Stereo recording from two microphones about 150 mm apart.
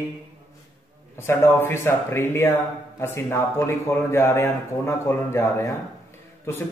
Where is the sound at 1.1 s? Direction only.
15° left (ahead or behind).